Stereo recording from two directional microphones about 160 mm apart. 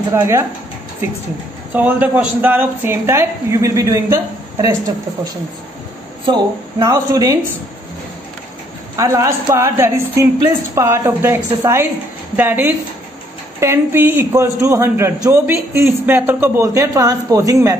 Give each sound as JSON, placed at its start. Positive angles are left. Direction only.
{"t": 0.1, "sound": "a woman's voice", "side_deg": -15}
{"t": 1.7, "sound": "a woman's voice", "side_deg": -10}
{"t": 6.2, "sound": "speech", "side_deg": -25}
{"t": 8.9, "sound": "a woman's voice", "side_deg": -20}